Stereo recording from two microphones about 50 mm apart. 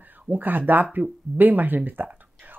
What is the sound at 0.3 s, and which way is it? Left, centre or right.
Speech, right.